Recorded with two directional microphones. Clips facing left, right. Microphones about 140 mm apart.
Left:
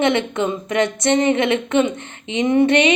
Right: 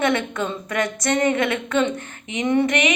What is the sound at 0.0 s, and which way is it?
A woman's voice, 20° left (ahead or behind).